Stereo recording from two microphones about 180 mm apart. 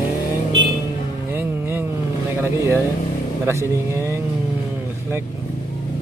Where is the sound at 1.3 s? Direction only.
10° right (ahead or behind).